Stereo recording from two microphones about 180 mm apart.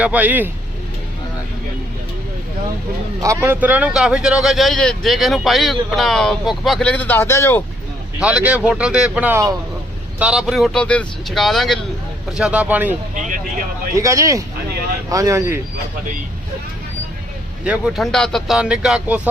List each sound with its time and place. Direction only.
0.0 s speech: 10° right (ahead or behind)
3.2 s speech: 15° right (ahead or behind); by 7.6 s 15° left (ahead or behind)
8.2 s speech: 5° right (ahead or behind)
10.2 s speech: 5° right (ahead or behind)
13.1 s speech: 45° right (ahead or behind)
13.9 s speech: 15° right (ahead or behind)
17.7 s speech: centre (ahead or behind)